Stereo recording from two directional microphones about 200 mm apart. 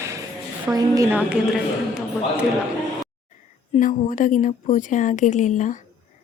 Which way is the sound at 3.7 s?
40° left (ahead or behind).